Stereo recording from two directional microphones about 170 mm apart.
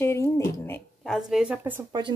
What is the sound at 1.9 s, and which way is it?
Speech, 25° right (ahead or behind).